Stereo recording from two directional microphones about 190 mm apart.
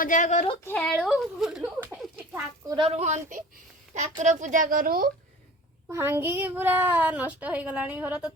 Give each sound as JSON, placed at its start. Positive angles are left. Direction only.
{"t": 0.0, "sound": "speech", "side_deg": 40}
{"t": 0.6, "sound": "a woman's voice", "side_deg": 5}
{"t": 1.6, "sound": "speech", "side_deg": -15}
{"t": 2.6, "sound": "a woman's voice", "side_deg": -25}
{"t": 5.9, "sound": "speech", "side_deg": -15}